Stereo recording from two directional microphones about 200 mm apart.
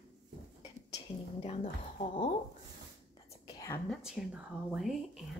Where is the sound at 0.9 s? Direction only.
30° left (ahead or behind).